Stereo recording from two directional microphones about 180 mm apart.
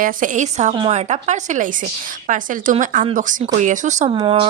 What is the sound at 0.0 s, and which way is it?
Speech, 45° right (ahead or behind).